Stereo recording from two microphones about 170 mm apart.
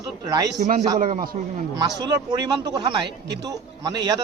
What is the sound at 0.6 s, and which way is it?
Speech, 45° right (ahead or behind).